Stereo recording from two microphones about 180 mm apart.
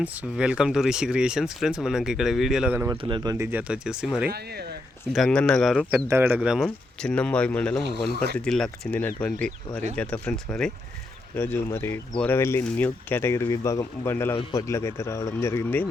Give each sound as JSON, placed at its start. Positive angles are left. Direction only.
{"t": 0.0, "sound": "speech", "side_deg": -5}
{"t": 3.0, "sound": "speech", "side_deg": -25}
{"t": 3.3, "sound": "speech", "side_deg": -10}
{"t": 4.3, "sound": "speech", "side_deg": -60}
{"t": 5.1, "sound": "speech", "side_deg": 5}
{"t": 5.9, "sound": "speech", "side_deg": -15}